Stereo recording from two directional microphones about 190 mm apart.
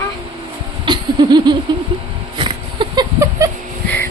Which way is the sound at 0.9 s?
25° right (ahead or behind).